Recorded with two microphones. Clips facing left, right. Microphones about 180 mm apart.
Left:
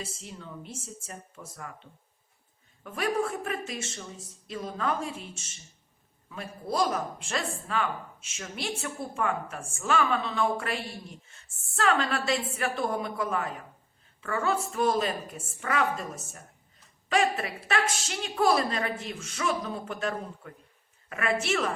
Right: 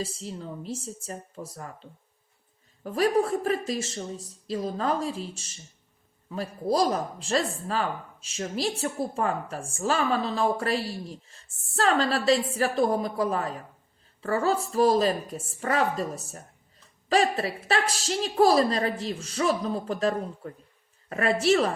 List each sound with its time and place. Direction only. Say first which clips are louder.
0.0 s speech: right 7 dB; 35° right (ahead or behind)